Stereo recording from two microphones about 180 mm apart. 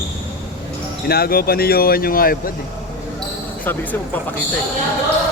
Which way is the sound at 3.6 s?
10° left (ahead or behind).